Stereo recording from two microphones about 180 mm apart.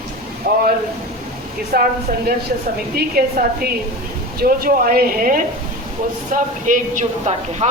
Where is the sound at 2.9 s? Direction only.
55° right (ahead or behind).